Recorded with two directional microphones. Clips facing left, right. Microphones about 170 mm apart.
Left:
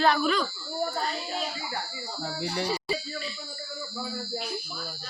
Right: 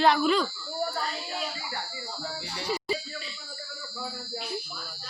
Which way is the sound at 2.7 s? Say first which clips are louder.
Even; 20° right (ahead or behind).